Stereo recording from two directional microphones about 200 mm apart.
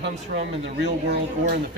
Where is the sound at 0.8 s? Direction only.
55° right (ahead or behind).